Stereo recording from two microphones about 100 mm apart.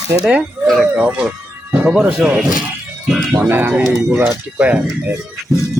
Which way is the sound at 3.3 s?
20° right (ahead or behind).